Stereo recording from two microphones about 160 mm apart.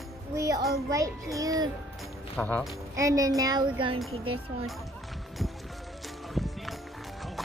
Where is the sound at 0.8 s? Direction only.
20° right (ahead or behind).